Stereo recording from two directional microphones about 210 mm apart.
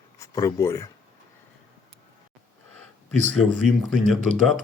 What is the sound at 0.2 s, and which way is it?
Speech, 15° left (ahead or behind).